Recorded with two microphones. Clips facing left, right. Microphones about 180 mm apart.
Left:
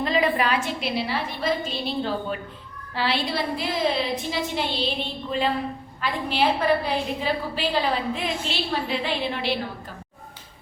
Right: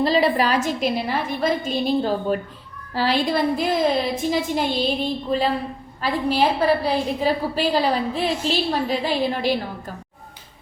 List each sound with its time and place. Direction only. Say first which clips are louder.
0.0 s a woman's voice: right 4 dB; 35° right (ahead or behind)